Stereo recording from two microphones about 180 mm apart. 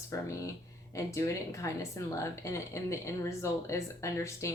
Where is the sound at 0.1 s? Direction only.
15° left (ahead or behind).